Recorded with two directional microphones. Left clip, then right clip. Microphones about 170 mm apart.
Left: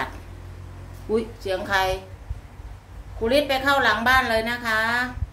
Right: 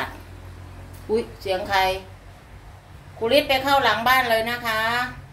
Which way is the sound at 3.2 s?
15° right (ahead or behind).